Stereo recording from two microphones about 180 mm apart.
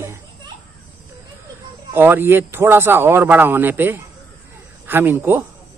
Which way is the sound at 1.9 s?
10° right (ahead or behind).